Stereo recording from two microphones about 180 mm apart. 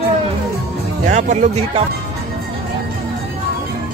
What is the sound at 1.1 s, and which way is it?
Speech, 40° right (ahead or behind).